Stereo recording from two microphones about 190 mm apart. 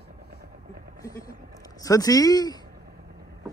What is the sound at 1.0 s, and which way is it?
Speech, 20° left (ahead or behind).